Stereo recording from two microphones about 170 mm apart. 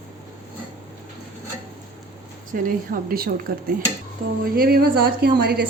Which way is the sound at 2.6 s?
55° right (ahead or behind).